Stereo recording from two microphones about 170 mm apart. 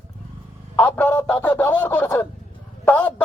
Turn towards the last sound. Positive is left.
turn(degrees=10)  # may be behind; listen again after turning